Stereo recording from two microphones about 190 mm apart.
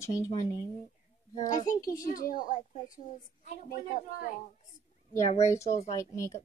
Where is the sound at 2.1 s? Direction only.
45° left (ahead or behind).